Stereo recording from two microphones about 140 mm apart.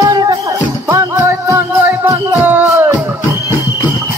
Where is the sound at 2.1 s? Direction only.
15° right (ahead or behind).